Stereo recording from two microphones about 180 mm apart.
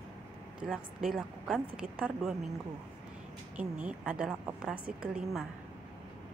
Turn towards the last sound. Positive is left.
turn(degrees=-5)  # may be behind; listen again after turning